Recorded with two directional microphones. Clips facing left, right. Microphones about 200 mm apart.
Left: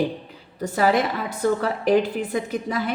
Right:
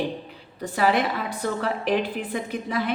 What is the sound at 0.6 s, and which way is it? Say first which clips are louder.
A woman's voice: left 2 dB; 40° left (ahead or behind).